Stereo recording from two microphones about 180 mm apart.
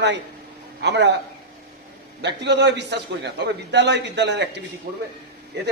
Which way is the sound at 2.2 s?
70° right (ahead or behind).